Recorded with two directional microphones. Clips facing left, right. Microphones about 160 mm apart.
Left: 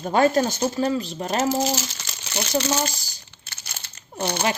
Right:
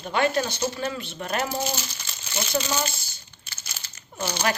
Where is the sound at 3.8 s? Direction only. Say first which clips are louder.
Left 4 dB; 60° left (ahead or behind).